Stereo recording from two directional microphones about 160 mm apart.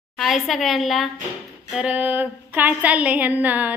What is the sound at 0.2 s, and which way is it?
A woman's voice, centre (ahead or behind).